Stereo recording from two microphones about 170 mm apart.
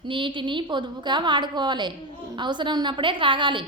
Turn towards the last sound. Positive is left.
turn(degrees=-30)  # may be behind; listen again after turning